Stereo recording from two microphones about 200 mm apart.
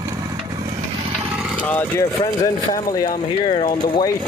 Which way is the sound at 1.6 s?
10° left (ahead or behind).